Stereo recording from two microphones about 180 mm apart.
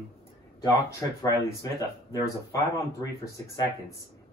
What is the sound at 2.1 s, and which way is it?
Speech, 15° left (ahead or behind).